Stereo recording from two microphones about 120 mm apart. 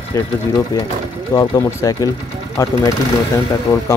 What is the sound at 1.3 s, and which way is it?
Speech, 30° left (ahead or behind).